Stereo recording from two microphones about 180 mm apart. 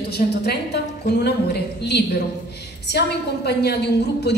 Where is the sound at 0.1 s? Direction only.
65° left (ahead or behind).